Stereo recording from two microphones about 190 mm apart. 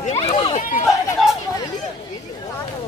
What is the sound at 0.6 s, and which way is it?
Chatter, 45° left (ahead or behind).